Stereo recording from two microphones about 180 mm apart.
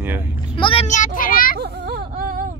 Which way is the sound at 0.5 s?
30° left (ahead or behind).